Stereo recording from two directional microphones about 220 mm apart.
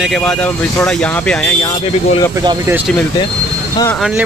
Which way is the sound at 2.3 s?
15° right (ahead or behind).